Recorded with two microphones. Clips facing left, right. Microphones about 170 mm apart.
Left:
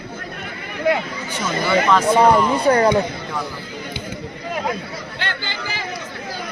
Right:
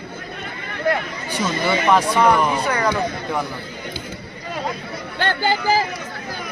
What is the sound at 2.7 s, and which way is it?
Speech, 30° left (ahead or behind).